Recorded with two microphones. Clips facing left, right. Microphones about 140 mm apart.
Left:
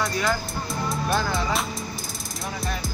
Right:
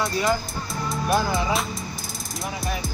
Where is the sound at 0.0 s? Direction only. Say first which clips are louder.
Right 2 dB; 25° right (ahead or behind).